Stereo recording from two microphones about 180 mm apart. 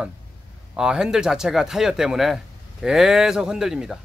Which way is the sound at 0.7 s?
5° right (ahead or behind).